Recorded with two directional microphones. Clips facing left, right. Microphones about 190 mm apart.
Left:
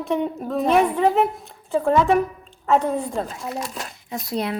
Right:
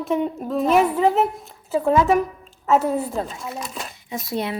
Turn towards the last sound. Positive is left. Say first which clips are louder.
# even
turn(degrees=0)  # may be behind; listen again after turning